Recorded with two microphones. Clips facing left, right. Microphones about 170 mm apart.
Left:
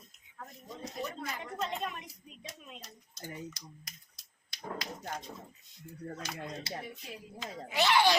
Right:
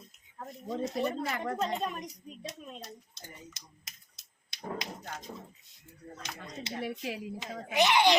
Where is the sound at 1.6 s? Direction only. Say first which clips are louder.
Right 4 dB; 40° right (ahead or behind).